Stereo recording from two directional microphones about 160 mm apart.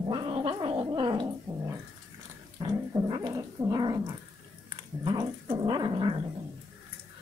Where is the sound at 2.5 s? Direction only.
25° right (ahead or behind).